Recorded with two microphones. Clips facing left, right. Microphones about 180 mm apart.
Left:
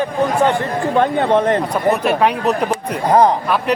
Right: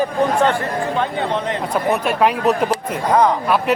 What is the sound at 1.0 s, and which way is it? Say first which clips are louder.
Speech: left 11 dB; 50° left (ahead or behind).